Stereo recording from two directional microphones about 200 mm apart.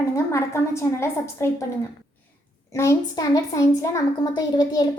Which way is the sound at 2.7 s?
15° left (ahead or behind).